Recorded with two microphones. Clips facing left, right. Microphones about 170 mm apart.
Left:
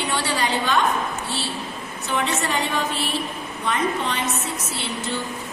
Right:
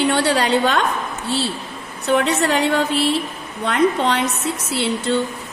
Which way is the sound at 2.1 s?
65° right (ahead or behind).